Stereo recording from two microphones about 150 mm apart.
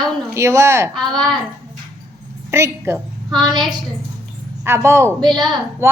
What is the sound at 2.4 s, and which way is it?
Speech, 20° right (ahead or behind).